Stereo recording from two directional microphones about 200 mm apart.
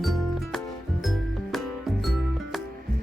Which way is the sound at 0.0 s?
Centre (ahead or behind).